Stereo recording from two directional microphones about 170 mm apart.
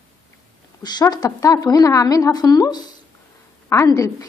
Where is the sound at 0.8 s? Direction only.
25° left (ahead or behind).